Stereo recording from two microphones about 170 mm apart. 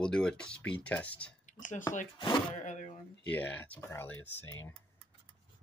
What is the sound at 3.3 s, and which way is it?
Speech, 10° left (ahead or behind).